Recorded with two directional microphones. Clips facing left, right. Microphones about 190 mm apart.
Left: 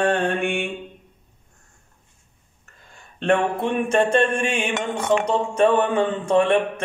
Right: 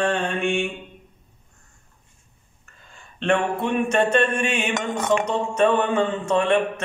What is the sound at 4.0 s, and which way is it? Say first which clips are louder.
Mantra: left 2 dB; 30° left (ahead or behind).